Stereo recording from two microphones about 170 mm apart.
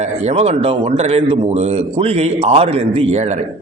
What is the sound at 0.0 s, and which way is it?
A man's voice, 40° right (ahead or behind).